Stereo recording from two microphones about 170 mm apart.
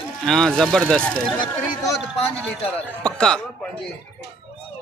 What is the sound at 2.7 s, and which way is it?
Speech, 5° left (ahead or behind).